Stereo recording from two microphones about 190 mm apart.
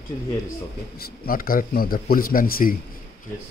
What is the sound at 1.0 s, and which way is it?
Speech, 50° left (ahead or behind).